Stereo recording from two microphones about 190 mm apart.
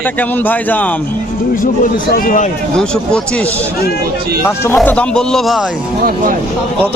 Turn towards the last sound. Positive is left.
turn(degrees=0)  # may be behind; listen again after turning